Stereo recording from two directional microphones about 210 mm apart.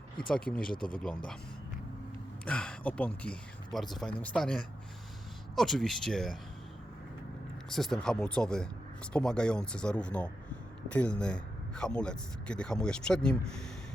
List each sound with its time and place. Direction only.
0.3 s speech: 5° left (ahead or behind)
0.7 s speech: 40° left (ahead or behind)
1.0 s speech: 5° left (ahead or behind)
2.4 s speech: 5° left (ahead or behind)
7.7 s speech: centre (ahead or behind)